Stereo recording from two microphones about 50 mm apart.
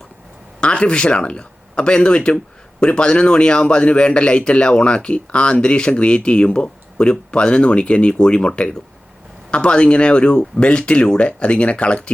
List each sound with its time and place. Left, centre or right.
0.6 s speech: left